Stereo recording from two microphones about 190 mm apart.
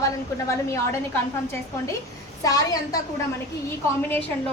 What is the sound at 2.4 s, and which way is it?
Speech, 20° left (ahead or behind).